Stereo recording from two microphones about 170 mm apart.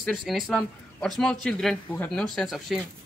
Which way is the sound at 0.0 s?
Centre (ahead or behind).